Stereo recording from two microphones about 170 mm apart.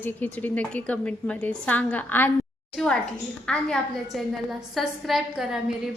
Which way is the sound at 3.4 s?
5° left (ahead or behind).